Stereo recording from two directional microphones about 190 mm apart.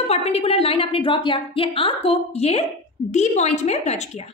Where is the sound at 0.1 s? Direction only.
35° left (ahead or behind).